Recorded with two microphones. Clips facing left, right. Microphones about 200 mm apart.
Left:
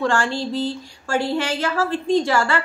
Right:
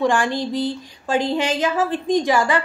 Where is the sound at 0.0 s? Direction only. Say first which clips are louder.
Right 2 dB; 15° right (ahead or behind).